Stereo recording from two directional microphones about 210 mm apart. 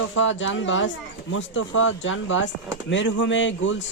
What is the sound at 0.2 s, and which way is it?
Speech, 65° left (ahead or behind).